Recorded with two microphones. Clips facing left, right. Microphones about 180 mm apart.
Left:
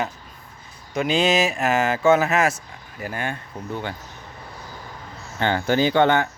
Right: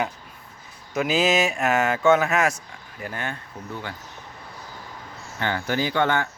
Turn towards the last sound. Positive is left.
turn(degrees=20)  # may be behind; listen again after turning